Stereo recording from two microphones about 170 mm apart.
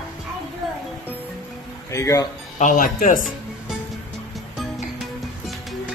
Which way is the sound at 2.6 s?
50° left (ahead or behind).